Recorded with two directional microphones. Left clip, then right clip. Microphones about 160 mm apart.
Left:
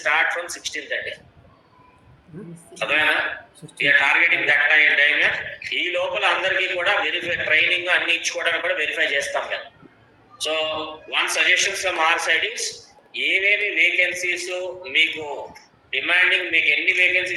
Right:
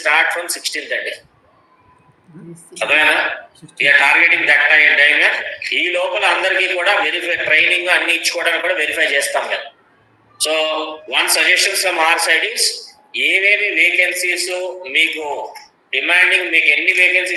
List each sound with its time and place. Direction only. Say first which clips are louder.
0.0 s speech: right 5 dB; 25° right (ahead or behind)
2.7 s speech: right 6 dB; 30° right (ahead or behind)